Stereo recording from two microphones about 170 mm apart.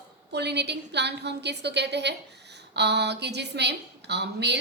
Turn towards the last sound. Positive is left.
turn(degrees=-80)